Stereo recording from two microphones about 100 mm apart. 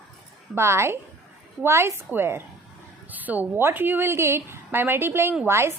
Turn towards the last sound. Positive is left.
turn(degrees=-25)  # may be behind; listen again after turning